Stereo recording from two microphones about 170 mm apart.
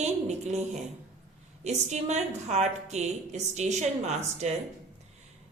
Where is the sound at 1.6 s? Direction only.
40° right (ahead or behind).